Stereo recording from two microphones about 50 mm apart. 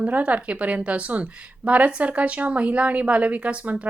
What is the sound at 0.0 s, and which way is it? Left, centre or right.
A woman's voice, right.